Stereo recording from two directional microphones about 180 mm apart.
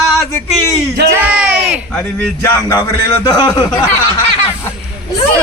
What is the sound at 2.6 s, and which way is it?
A man's voice, 20° left (ahead or behind).